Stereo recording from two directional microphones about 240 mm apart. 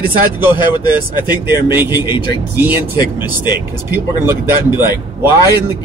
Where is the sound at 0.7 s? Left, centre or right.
Centre.